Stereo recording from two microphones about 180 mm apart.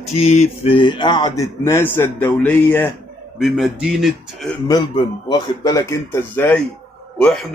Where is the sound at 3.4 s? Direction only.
Centre (ahead or behind).